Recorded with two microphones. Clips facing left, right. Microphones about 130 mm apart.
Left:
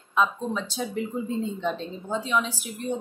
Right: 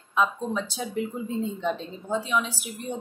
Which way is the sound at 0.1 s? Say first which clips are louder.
Even; 5° right (ahead or behind).